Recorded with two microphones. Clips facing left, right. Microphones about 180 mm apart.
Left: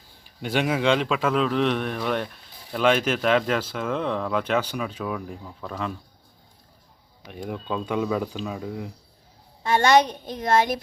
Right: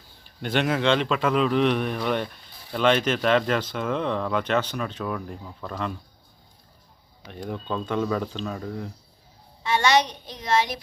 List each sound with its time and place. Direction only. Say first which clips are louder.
0.3 s a man's voice: even; 5° left (ahead or behind)
7.3 s speech: even; 5° left (ahead or behind)
9.6 s a woman's voice: left 3 dB; 50° left (ahead or behind)